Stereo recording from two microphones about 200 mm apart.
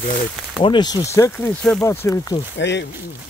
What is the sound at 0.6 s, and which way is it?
Speech, 20° left (ahead or behind).